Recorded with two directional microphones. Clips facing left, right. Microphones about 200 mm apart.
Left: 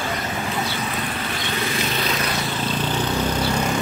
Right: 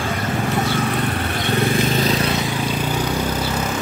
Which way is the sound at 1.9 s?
30° right (ahead or behind).